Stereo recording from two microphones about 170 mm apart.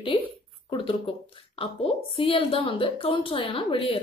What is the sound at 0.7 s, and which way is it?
A woman's voice, 30° left (ahead or behind).